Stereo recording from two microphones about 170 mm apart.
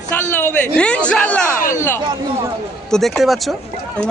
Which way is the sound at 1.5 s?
55° left (ahead or behind).